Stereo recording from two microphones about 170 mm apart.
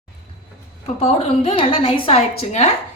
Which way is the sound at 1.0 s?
35° left (ahead or behind).